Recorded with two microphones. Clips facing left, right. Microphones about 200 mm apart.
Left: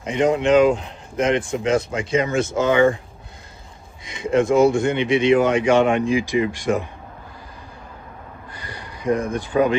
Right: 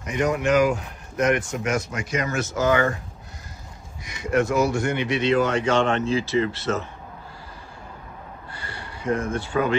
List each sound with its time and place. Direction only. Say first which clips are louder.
0.0 s speech: left 4 dB; 25° left (ahead or behind)
4.0 s speech: left 3 dB; 25° left (ahead or behind)
8.5 s a sound: left 1 dB; 15° left (ahead or behind)